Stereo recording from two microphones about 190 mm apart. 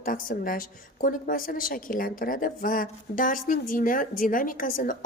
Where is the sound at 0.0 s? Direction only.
45° left (ahead or behind).